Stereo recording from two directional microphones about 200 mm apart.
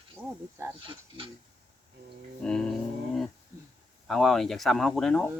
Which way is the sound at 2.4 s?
5° left (ahead or behind).